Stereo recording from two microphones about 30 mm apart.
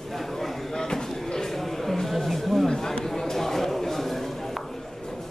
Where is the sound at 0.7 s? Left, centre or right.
Centre.